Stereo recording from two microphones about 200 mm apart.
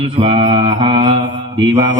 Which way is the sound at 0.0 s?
30° right (ahead or behind).